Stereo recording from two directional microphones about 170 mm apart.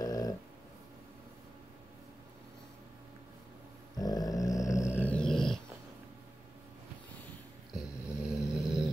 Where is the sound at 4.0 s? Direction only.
20° left (ahead or behind); by 5.5 s centre (ahead or behind).